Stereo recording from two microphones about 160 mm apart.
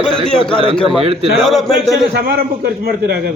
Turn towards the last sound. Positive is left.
turn(degrees=-85)